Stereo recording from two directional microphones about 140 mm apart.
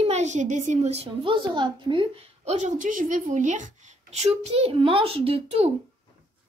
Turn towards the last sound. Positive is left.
turn(degrees=-45)  # may be behind; listen again after turning